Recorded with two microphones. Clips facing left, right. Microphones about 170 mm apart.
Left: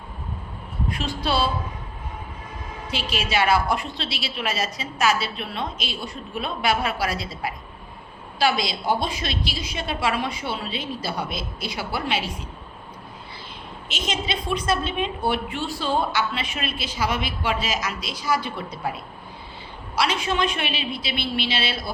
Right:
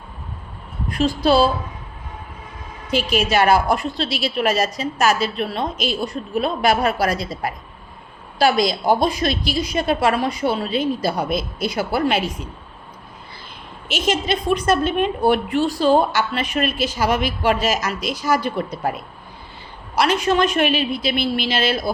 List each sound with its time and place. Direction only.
0.9 s a woman's voice: 40° right (ahead or behind)
2.9 s a woman's voice: 45° right (ahead or behind)
13.9 s a woman's voice: 50° right (ahead or behind)
20.0 s a woman's voice: 45° right (ahead or behind)